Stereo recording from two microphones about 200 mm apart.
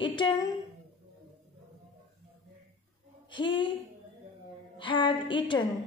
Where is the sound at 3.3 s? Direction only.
25° left (ahead or behind).